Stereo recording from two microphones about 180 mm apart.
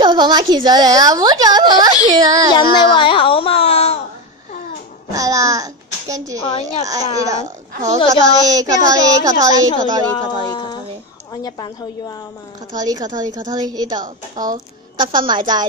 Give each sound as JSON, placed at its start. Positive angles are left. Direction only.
{"t": 0.0, "sound": "a woman's voice", "side_deg": -25}
{"t": 2.5, "sound": "a sound", "side_deg": 25}
{"t": 5.1, "sound": "a child's voice", "side_deg": -20}
{"t": 7.4, "sound": "a woman's voice", "side_deg": -45}
{"t": 8.1, "sound": "a woman's voice", "side_deg": -20}
{"t": 11.4, "sound": "a woman's voice", "side_deg": 20}
{"t": 12.7, "sound": "a woman's voice", "side_deg": -20}